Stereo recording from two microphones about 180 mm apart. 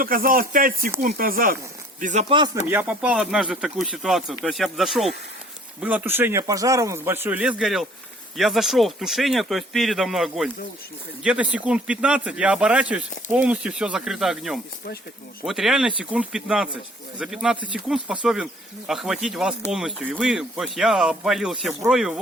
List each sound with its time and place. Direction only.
0.0 s speech: 50° right (ahead or behind)
2.6 s speech: 10° right (ahead or behind)